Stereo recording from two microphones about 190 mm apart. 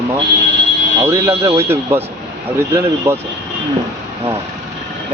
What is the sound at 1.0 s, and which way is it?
Speech, 15° right (ahead or behind).